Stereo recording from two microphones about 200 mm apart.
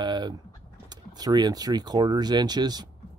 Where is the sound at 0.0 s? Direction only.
20° right (ahead or behind).